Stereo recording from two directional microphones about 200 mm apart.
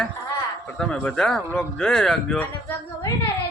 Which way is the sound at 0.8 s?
5° left (ahead or behind).